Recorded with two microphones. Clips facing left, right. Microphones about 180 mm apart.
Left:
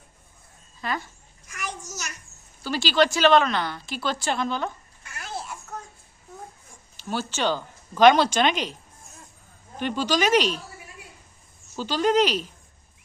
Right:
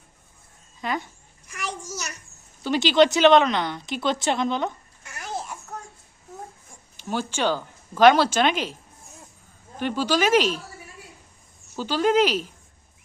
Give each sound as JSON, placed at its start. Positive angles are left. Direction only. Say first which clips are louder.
{"t": 0.8, "sound": "speech", "louder": "right 2 dB", "side_deg": -20}
{"t": 2.6, "sound": "a woman's voice", "louder": "right 4 dB", "side_deg": -20}
{"t": 6.9, "sound": "speech", "louder": "right 2 dB", "side_deg": -15}
{"t": 9.7, "sound": "speech", "louder": "right 1 dB", "side_deg": -10}
{"t": 11.8, "sound": "speech", "louder": "right 1 dB", "side_deg": -10}